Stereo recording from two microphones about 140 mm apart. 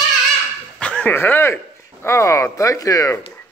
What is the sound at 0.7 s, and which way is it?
Speech, 5° left (ahead or behind).